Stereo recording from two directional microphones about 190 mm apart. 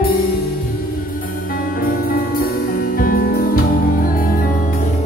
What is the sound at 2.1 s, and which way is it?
Music, 50° left (ahead or behind).